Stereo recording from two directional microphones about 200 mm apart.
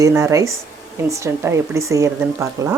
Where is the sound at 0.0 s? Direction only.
15° right (ahead or behind).